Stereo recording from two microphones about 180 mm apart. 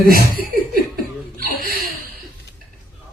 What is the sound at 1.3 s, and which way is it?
Chuckle, 55° right (ahead or behind).